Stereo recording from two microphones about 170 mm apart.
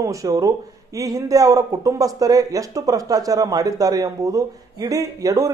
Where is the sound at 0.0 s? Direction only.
20° right (ahead or behind).